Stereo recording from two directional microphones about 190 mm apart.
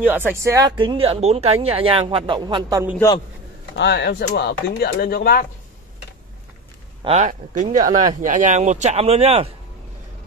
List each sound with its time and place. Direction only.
0.0 s speech: 10° right (ahead or behind)
3.7 s speech: 65° left (ahead or behind)
7.0 s speech: 35° right (ahead or behind)